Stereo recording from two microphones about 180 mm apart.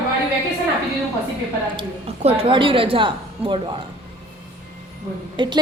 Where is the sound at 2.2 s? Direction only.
30° right (ahead or behind).